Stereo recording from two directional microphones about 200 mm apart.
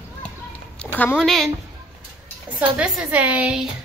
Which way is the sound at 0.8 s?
10° left (ahead or behind).